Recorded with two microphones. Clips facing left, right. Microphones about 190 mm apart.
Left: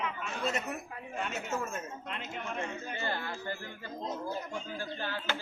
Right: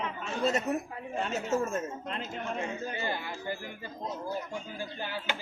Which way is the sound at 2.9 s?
15° right (ahead or behind).